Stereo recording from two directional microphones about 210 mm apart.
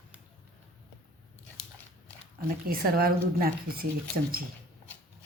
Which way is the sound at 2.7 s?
45° right (ahead or behind).